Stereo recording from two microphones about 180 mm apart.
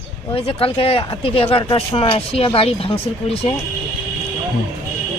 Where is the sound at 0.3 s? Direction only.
30° left (ahead or behind).